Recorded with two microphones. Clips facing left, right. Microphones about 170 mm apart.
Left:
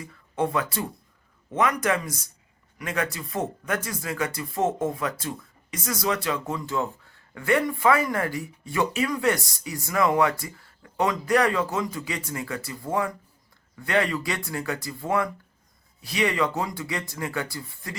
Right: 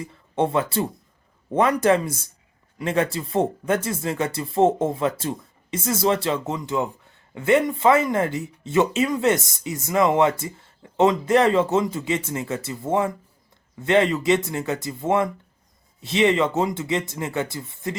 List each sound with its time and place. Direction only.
0.0 s speech: 25° right (ahead or behind)